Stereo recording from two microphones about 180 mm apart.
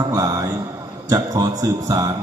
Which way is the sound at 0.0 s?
20° right (ahead or behind).